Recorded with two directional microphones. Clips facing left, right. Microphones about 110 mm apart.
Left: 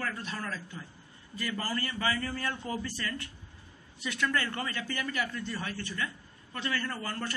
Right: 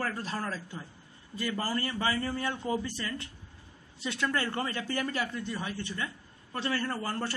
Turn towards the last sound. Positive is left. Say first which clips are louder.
# right 3 dB
turn(degrees=-30)  # may be behind; listen again after turning